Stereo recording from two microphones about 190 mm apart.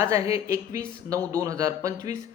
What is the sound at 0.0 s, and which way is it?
Speech, 15° right (ahead or behind).